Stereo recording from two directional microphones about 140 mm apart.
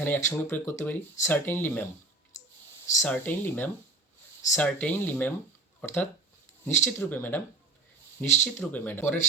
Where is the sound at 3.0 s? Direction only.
10° left (ahead or behind).